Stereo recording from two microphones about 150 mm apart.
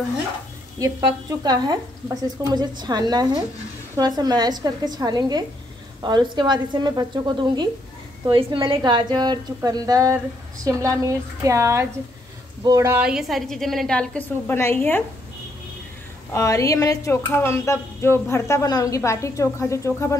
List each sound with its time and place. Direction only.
0.7 s a woman's voice: 25° right (ahead or behind)
13.0 s a woman's voice: 5° right (ahead or behind); by 15.0 s 15° left (ahead or behind)
16.3 s dishes: 20° left (ahead or behind)